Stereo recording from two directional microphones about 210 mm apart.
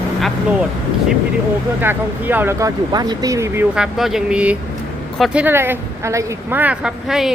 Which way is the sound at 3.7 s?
Centre (ahead or behind).